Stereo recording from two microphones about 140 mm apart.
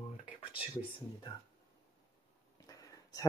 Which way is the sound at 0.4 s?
40° left (ahead or behind).